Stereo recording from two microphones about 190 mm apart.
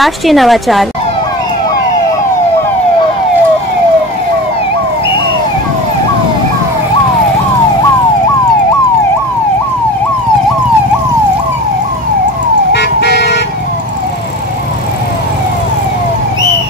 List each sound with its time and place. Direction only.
0.0 s a woman's voice: centre (ahead or behind)
12.7 s car alarm: 65° left (ahead or behind)